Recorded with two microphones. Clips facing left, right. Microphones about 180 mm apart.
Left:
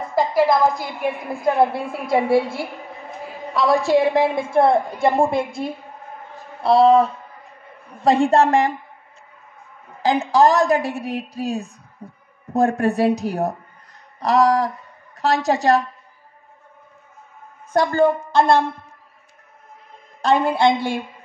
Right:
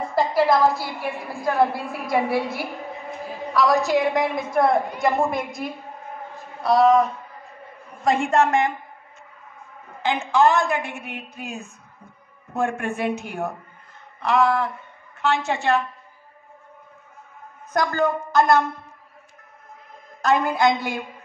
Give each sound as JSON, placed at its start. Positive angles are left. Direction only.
{"t": 0.1, "sound": "a woman's voice", "side_deg": 10}
{"t": 10.0, "sound": "a woman's voice", "side_deg": 35}
{"t": 17.7, "sound": "a woman's voice", "side_deg": 30}
{"t": 20.2, "sound": "a woman's voice", "side_deg": 30}